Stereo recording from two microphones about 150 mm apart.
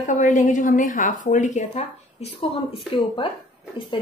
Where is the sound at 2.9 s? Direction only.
35° left (ahead or behind).